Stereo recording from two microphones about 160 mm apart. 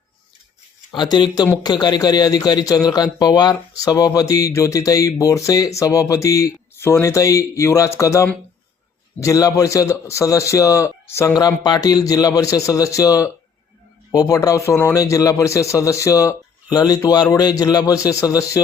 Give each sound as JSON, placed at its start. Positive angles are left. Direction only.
{"t": 0.9, "sound": "a man's voice", "side_deg": 25}